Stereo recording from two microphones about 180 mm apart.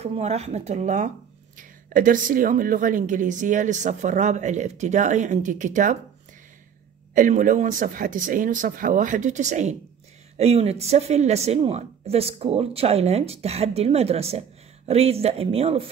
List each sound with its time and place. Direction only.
0.0 s a woman's voice: 35° right (ahead or behind)
7.2 s a woman's voice: 45° right (ahead or behind)